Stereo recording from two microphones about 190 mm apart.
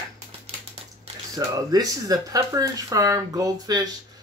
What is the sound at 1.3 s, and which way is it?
Speech, 20° right (ahead or behind).